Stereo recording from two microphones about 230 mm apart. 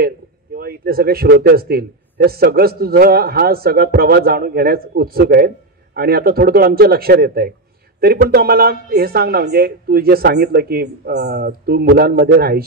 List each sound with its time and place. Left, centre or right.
0.6 s a man's voice: right